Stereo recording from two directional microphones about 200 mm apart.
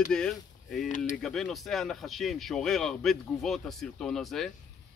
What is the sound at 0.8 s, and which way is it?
Speech, 40° left (ahead or behind).